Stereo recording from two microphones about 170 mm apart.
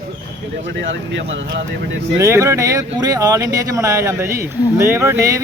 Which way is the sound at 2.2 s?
15° right (ahead or behind).